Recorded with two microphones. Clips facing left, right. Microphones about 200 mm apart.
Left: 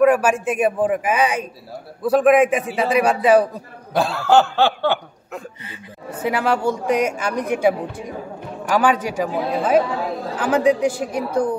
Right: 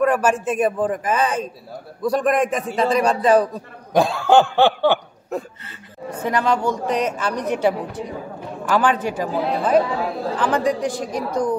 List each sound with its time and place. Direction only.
0.0 s a woman's voice: 10° left (ahead or behind)
3.9 s snicker: 15° right (ahead or behind)
5.7 s a woman's voice: 10° left (ahead or behind)